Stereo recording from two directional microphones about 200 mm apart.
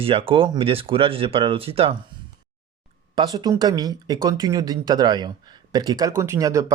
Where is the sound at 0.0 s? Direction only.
25° right (ahead or behind).